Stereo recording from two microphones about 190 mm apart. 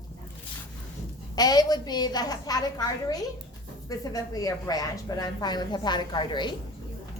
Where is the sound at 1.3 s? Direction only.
20° left (ahead or behind).